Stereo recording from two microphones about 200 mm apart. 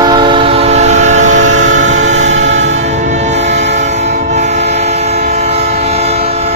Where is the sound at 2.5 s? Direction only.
65° right (ahead or behind).